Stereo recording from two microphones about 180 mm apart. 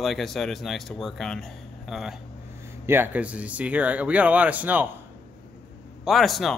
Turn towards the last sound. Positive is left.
turn(degrees=0)  # may be behind; listen again after turning